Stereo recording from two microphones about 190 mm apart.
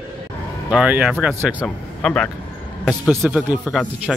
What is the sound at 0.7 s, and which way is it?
A man's voice, 5° right (ahead or behind).